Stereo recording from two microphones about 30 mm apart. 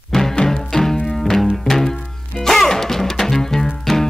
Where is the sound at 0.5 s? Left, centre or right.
Centre.